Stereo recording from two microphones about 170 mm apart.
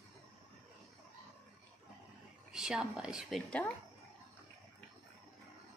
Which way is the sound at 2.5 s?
5° right (ahead or behind).